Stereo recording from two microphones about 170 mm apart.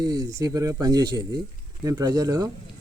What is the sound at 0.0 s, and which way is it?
Speech, 25° right (ahead or behind).